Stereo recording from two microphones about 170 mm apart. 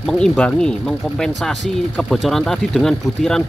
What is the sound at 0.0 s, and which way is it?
Speech, 5° left (ahead or behind).